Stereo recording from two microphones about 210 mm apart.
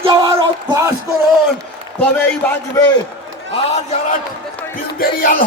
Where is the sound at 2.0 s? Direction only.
10° left (ahead or behind).